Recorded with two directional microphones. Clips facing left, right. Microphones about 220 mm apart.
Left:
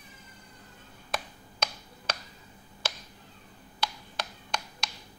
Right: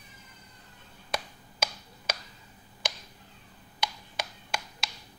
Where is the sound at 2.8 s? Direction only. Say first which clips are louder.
Even; 15° right (ahead or behind).